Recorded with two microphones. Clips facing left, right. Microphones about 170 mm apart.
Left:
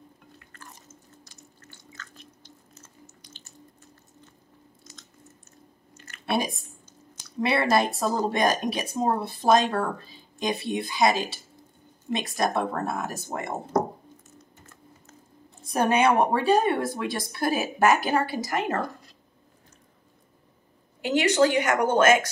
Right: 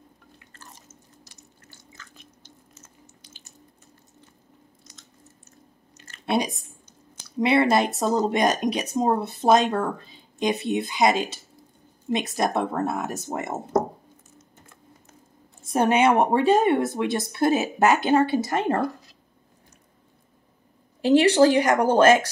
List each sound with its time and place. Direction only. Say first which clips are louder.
5.9 s a sound: right 3 dB; 25° right (ahead or behind)
7.3 s a woman's voice: right 3 dB; 20° right (ahead or behind)
15.6 s a woman's voice: right 2 dB; 20° right (ahead or behind)
21.0 s speech: right 5 dB; 30° right (ahead or behind)